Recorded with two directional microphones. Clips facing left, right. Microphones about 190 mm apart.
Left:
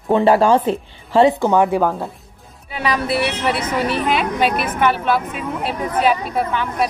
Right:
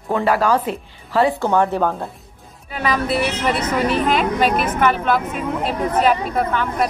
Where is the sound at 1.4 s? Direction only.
15° left (ahead or behind).